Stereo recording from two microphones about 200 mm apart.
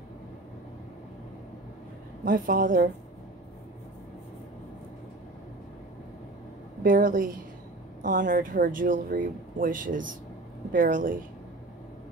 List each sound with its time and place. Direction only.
2.2 s speech: 45° right (ahead or behind)
6.8 s speech: 45° right (ahead or behind)